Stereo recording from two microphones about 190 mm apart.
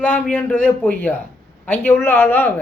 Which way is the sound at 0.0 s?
10° left (ahead or behind).